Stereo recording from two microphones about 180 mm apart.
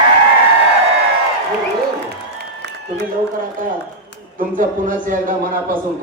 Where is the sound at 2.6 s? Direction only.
75° right (ahead or behind).